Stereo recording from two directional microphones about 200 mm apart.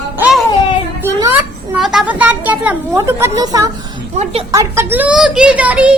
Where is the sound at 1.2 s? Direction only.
10° right (ahead or behind).